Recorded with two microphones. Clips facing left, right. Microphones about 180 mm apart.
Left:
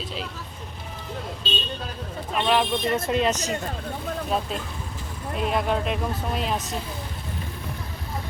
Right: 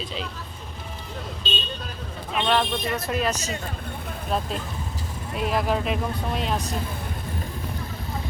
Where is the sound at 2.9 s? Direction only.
25° left (ahead or behind).